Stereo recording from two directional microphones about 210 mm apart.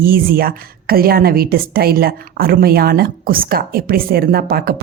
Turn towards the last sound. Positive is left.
turn(degrees=-45)  # may be behind; listen again after turning